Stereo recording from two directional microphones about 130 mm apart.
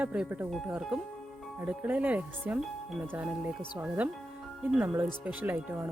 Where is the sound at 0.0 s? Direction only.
10° right (ahead or behind).